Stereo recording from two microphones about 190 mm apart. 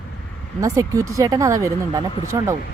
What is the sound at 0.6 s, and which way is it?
A woman's voice, 15° right (ahead or behind).